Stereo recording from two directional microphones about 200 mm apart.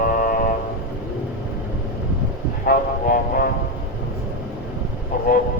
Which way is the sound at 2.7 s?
45° left (ahead or behind).